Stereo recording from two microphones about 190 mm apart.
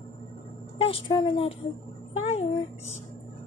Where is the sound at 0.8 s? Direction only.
25° left (ahead or behind).